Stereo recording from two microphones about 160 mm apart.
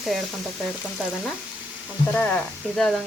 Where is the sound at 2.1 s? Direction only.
10° left (ahead or behind).